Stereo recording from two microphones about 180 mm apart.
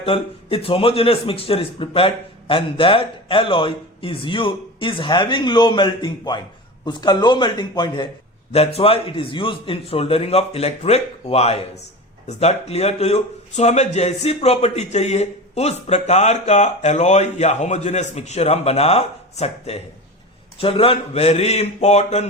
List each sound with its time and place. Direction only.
0.0 s speech: 30° left (ahead or behind)